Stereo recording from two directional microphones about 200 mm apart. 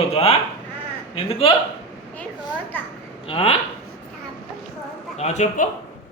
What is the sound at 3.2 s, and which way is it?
Speech, 30° left (ahead or behind).